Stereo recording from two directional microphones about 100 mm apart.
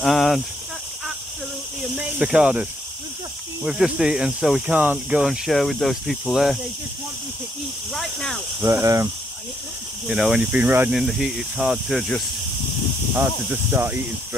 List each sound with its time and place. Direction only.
0.0 s a sound: centre (ahead or behind)
2.0 s speech: 10° right (ahead or behind)
7.9 s a sound: 5° left (ahead or behind)
8.5 s speech: 25° right (ahead or behind)
10.0 s speech: 5° right (ahead or behind)
10.6 s speech: 20° right (ahead or behind)
10.9 s speech: centre (ahead or behind)
13.1 s speech: 15° right (ahead or behind)